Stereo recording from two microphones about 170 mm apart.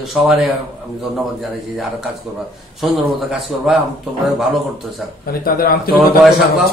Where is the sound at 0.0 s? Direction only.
Centre (ahead or behind).